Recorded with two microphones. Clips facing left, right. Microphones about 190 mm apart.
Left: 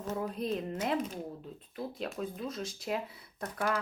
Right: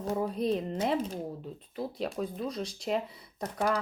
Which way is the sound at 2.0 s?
35° right (ahead or behind).